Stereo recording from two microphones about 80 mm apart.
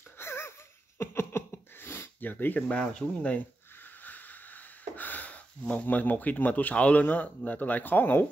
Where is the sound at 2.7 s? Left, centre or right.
Centre.